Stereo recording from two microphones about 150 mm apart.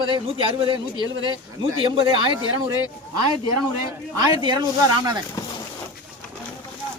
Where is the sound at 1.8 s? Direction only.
35° right (ahead or behind).